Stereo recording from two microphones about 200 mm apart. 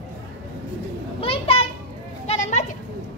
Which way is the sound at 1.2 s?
30° left (ahead or behind).